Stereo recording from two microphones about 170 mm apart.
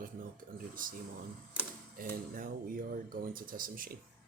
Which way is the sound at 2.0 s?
55° right (ahead or behind).